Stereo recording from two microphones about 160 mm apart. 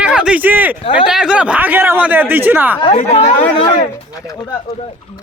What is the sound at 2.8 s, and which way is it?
Speech, 40° left (ahead or behind).